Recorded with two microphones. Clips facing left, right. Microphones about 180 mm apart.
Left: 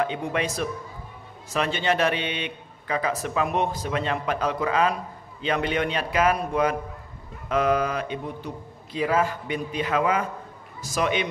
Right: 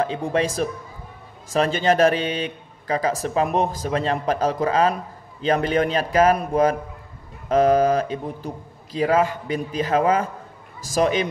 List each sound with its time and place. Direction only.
0.0 s a man's voice: 35° right (ahead or behind)
1.5 s a man's voice: 40° right (ahead or behind)